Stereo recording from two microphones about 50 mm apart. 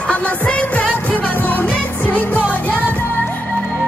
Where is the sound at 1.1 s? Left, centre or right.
Left.